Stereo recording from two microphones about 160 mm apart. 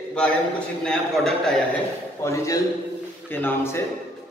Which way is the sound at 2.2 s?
20° left (ahead or behind).